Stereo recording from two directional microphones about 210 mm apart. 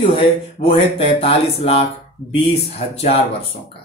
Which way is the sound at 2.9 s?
30° left (ahead or behind).